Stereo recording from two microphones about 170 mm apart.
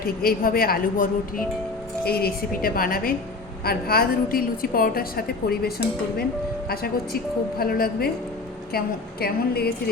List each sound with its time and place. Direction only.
0.0 s a woman's voice: 60° left (ahead or behind)
2.0 s a woman's voice: 65° left (ahead or behind)
9.2 s a woman's voice: 65° left (ahead or behind)